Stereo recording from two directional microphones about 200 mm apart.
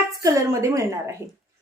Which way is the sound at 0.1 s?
15° right (ahead or behind).